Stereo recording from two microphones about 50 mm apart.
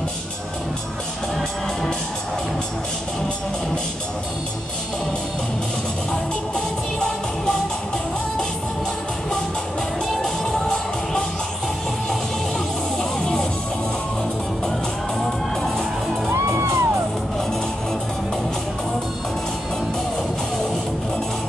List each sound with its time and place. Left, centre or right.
10.1 s music: centre
13.2 s music: centre
16.3 s music: right